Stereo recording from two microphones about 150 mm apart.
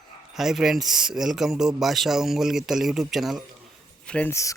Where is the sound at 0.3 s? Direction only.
Centre (ahead or behind).